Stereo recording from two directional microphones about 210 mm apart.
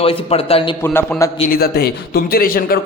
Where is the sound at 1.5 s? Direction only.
45° left (ahead or behind).